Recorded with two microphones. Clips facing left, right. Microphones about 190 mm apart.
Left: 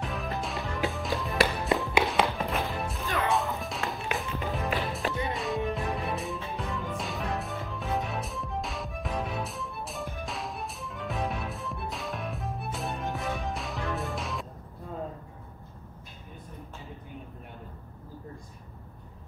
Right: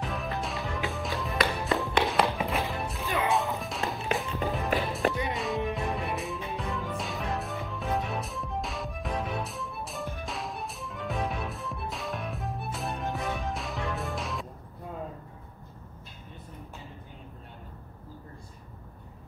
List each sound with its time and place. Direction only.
0.0 s music: centre (ahead or behind)